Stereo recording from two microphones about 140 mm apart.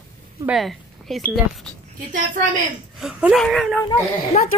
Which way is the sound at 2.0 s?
65° right (ahead or behind).